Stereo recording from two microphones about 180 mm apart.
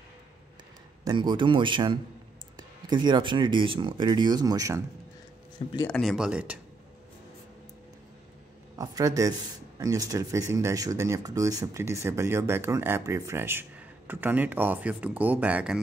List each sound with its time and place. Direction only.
1.0 s speech: 25° right (ahead or behind)
5.9 s speech: centre (ahead or behind)
8.7 s speech: 20° right (ahead or behind)